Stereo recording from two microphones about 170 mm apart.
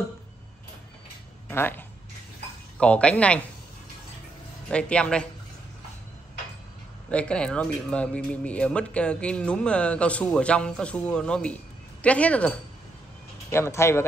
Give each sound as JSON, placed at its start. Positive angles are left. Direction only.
{"t": 1.5, "sound": "speech", "side_deg": 10}
{"t": 4.6, "sound": "speech", "side_deg": 5}
{"t": 7.1, "sound": "speech", "side_deg": 5}